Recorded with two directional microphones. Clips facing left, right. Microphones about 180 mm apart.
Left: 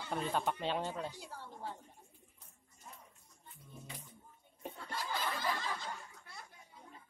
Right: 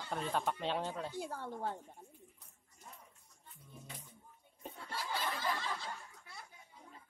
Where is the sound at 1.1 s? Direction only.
55° right (ahead or behind).